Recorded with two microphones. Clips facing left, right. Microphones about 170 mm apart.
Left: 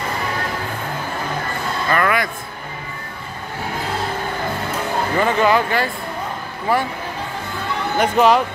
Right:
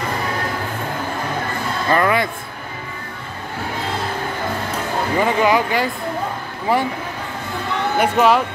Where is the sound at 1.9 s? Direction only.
25° right (ahead or behind).